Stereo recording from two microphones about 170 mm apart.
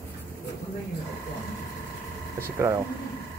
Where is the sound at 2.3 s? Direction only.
15° right (ahead or behind).